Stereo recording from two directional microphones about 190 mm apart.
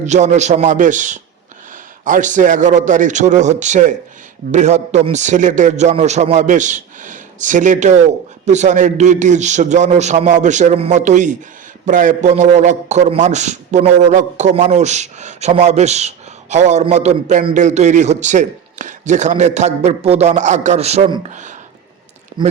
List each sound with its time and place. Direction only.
0.0 s a man's voice: 40° right (ahead or behind)
22.4 s speech: 25° right (ahead or behind)